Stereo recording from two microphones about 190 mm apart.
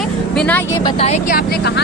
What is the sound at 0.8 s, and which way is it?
Speech, 35° left (ahead or behind).